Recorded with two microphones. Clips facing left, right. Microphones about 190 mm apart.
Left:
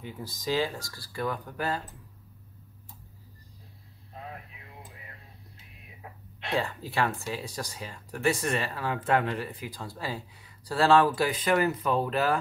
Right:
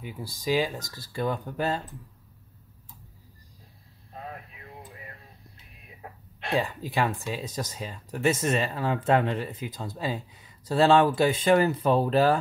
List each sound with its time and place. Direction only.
0.0 s speech: 10° right (ahead or behind)
6.5 s speech: 15° right (ahead or behind)